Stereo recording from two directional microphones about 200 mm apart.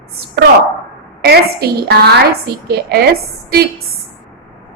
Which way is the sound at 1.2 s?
55° right (ahead or behind).